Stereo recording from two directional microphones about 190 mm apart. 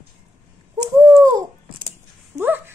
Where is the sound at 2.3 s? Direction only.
10° right (ahead or behind).